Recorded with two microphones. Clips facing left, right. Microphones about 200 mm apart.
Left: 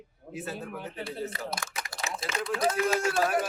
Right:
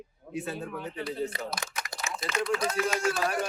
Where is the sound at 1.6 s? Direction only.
20° right (ahead or behind).